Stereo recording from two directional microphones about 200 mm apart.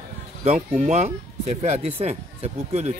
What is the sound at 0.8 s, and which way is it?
Speech, 35° right (ahead or behind).